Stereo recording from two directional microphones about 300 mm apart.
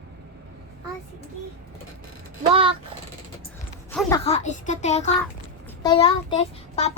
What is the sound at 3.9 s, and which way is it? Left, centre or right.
Speech, centre.